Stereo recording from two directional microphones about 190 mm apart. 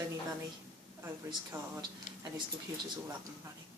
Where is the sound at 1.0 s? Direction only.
20° right (ahead or behind).